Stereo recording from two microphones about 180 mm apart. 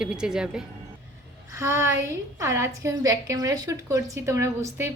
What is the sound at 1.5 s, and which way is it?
A woman's voice, 15° right (ahead or behind).